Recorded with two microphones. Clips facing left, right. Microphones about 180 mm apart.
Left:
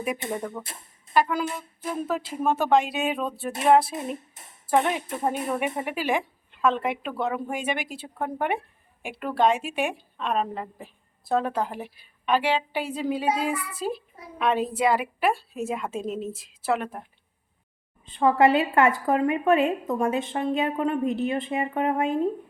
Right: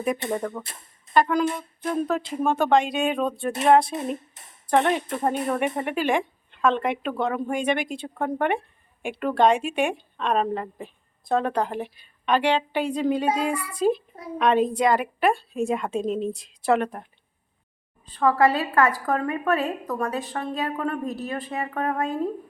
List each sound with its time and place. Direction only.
0.0 s a woman's voice: 10° left (ahead or behind)
18.1 s a woman's voice: 25° left (ahead or behind)